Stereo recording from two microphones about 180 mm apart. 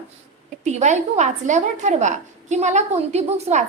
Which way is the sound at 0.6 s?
40° right (ahead or behind).